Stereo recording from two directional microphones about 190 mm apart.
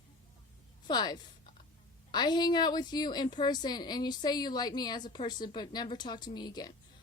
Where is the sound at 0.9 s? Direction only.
20° left (ahead or behind).